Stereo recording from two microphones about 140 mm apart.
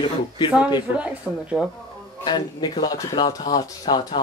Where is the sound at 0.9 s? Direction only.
10° right (ahead or behind).